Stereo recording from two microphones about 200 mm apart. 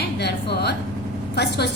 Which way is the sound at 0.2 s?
55° left (ahead or behind).